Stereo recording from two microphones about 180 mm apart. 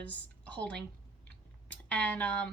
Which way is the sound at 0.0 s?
10° left (ahead or behind).